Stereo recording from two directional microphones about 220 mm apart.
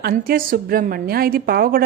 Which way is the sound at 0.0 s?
40° right (ahead or behind).